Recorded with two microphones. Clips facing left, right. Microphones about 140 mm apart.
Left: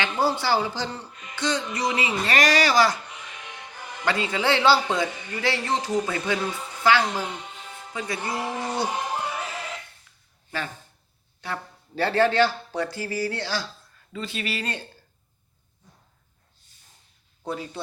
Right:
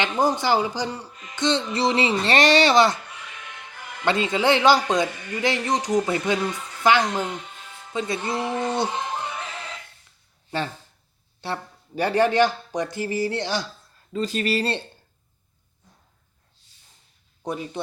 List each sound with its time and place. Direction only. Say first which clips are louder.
0.0 s speech: right 2 dB; 20° right (ahead or behind)
1.4 s speech: right 4 dB; 25° right (ahead or behind)
3.8 s music: even; 15° left (ahead or behind)
4.0 s speech: right 4 dB; 25° right (ahead or behind)
9.1 s music: left 1 dB; 5° left (ahead or behind)
11.3 s a sound: right 3 dB; 30° right (ahead or behind)
11.9 s speech: right 1 dB; 15° right (ahead or behind)
14.1 s speech: right 7 dB; 40° right (ahead or behind)
17.4 s speech: right 2 dB; 20° right (ahead or behind)